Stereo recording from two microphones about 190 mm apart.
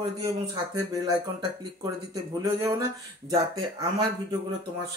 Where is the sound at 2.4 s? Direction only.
15° right (ahead or behind).